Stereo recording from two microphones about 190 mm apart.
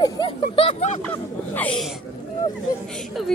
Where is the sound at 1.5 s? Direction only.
5° left (ahead or behind).